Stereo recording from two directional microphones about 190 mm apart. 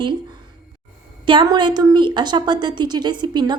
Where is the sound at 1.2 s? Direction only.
25° right (ahead or behind).